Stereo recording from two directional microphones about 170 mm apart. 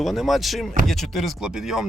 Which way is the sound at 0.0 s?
Centre (ahead or behind).